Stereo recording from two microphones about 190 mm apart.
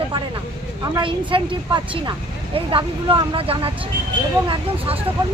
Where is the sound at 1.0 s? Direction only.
25° right (ahead or behind).